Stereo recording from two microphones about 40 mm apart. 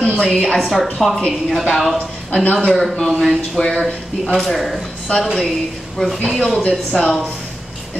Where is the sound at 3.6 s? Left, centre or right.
Centre.